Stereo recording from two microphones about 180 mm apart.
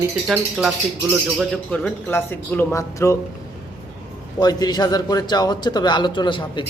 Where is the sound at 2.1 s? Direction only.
15° left (ahead or behind).